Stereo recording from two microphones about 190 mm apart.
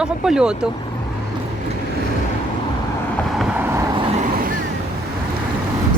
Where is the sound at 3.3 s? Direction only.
5° right (ahead or behind).